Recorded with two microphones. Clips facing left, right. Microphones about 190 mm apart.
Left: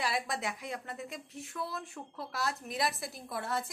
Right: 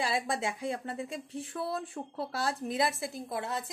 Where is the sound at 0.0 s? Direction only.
30° right (ahead or behind).